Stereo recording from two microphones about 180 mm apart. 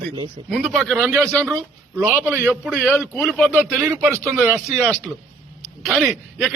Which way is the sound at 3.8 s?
15° right (ahead or behind).